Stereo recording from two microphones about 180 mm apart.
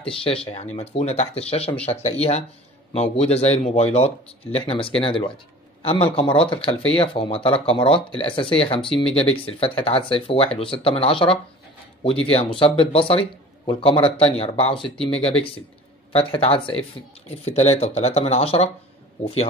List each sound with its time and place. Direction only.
0.0 s speech: 30° left (ahead or behind)